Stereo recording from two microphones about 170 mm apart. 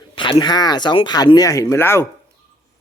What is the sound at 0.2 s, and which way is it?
Speech, 25° left (ahead or behind).